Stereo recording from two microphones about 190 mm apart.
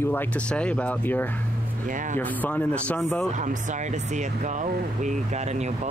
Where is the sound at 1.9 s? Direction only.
45° right (ahead or behind).